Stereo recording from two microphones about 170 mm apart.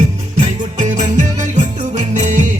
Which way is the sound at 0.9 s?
45° right (ahead or behind).